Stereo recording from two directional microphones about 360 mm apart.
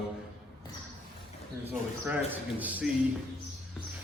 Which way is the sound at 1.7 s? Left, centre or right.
Centre.